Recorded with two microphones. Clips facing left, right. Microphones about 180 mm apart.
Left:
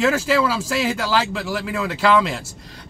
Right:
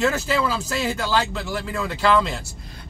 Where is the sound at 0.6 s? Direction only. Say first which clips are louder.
Left 3 dB; 90° left.